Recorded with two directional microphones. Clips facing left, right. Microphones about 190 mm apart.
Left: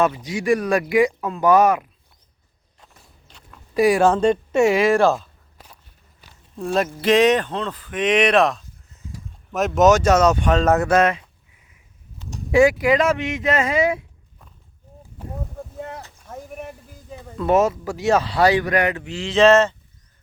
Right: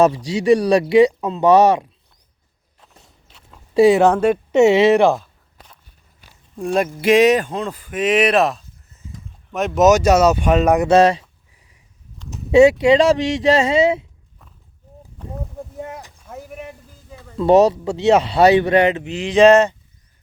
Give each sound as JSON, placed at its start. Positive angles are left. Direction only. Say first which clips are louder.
{"t": 0.3, "sound": "speech", "louder": "right 5 dB", "side_deg": -30}
{"t": 3.5, "sound": "a sound", "louder": "right 5 dB", "side_deg": -25}
{"t": 4.1, "sound": "speech", "louder": "right 1 dB", "side_deg": -5}
{"t": 4.5, "sound": "speech", "louder": "right 6 dB", "side_deg": -25}
{"t": 7.0, "sound": "speech", "louder": "right 3 dB", "side_deg": -10}
{"t": 10.8, "sound": "speech", "louder": "right 5 dB", "side_deg": -30}
{"t": 12.5, "sound": "speech", "louder": "right 5 dB", "side_deg": -25}
{"t": 15.8, "sound": "a sound", "louder": "right 1 dB", "side_deg": -15}
{"t": 17.3, "sound": "speech", "louder": "right 5 dB", "side_deg": -30}